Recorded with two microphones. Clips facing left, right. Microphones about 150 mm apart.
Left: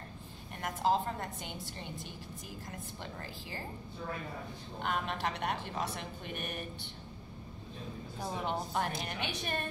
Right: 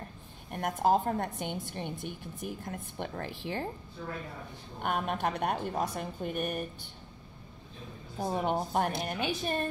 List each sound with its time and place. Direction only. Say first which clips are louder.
0.5 s a woman's voice: right 4 dB; 50° right (ahead or behind)
4.8 s a woman's voice: right 4 dB; 50° right (ahead or behind)
8.2 s a woman's voice: right 6 dB; 50° right (ahead or behind)